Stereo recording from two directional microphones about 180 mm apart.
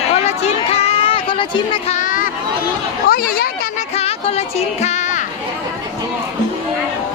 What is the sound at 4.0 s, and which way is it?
Music, 35° left (ahead or behind).